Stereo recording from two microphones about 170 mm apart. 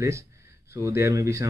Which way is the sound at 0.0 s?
15° right (ahead or behind).